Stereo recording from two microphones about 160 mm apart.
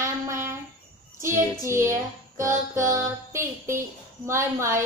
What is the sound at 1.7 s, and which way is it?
Child singing, 15° right (ahead or behind).